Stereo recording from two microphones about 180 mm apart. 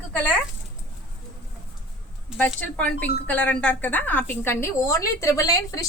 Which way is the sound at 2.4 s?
5° left (ahead or behind).